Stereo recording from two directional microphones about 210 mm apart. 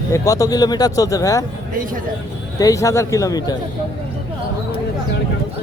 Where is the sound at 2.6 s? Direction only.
15° left (ahead or behind).